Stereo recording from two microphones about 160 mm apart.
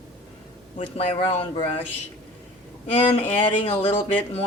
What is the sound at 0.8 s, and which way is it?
Speech, 35° left (ahead or behind).